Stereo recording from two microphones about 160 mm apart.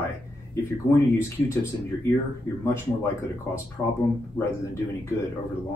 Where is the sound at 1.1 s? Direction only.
15° left (ahead or behind).